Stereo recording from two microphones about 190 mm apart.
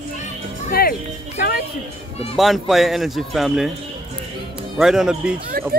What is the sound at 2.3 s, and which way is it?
Speech, centre (ahead or behind).